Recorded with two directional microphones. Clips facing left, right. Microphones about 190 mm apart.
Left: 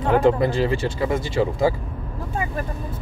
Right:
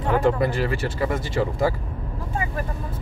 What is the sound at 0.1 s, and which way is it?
Speech, 20° left (ahead or behind).